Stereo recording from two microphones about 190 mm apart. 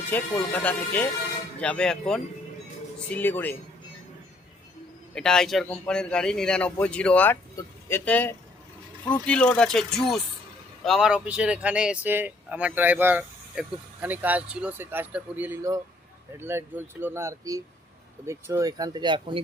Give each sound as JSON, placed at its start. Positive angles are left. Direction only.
{"t": 0.1, "sound": "speech", "side_deg": 10}
{"t": 5.1, "sound": "speech", "side_deg": 5}